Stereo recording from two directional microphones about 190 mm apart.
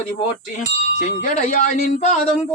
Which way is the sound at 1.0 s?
40° left (ahead or behind).